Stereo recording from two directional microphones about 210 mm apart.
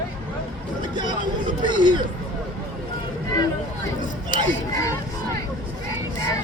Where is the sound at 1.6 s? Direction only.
20° right (ahead or behind).